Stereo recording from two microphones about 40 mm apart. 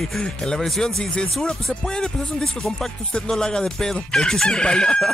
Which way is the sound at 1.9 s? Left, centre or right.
Centre.